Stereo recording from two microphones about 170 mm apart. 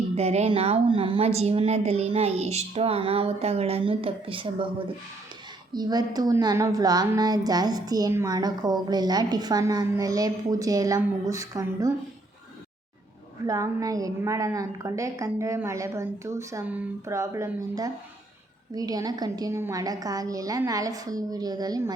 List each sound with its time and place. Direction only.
0.2 s a woman's voice: 40° right (ahead or behind)
5.7 s a woman's voice: 25° right (ahead or behind)
13.5 s a woman's voice: 20° right (ahead or behind)